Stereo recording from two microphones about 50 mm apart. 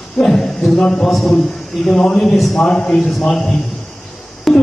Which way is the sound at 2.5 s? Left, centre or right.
Centre.